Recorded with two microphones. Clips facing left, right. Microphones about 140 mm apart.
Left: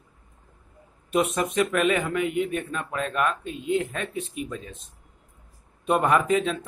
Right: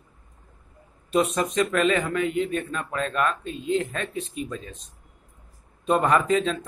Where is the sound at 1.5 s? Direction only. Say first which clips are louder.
Even; 10° left (ahead or behind).